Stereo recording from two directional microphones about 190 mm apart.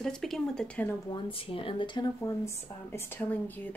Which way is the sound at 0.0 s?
Centre (ahead or behind).